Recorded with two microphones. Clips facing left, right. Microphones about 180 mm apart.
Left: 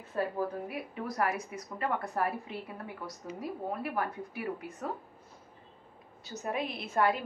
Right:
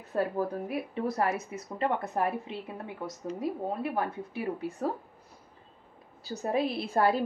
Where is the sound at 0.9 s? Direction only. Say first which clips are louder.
Right 3 dB; 25° right (ahead or behind).